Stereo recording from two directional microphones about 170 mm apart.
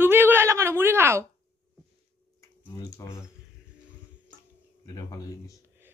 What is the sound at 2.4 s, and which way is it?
Speech, 20° left (ahead or behind).